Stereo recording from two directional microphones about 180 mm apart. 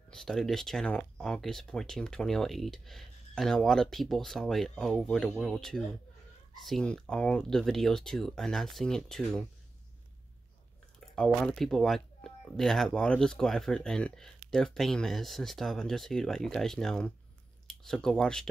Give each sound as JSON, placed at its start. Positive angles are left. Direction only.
{"t": 0.1, "sound": "speech", "side_deg": 0}
{"t": 11.1, "sound": "speech", "side_deg": 5}